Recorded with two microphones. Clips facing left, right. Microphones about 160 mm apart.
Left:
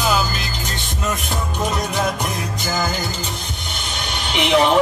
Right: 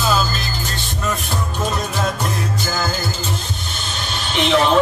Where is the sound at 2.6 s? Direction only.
15° left (ahead or behind).